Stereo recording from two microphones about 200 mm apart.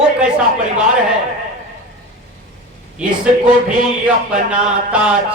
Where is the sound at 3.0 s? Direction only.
5° right (ahead or behind).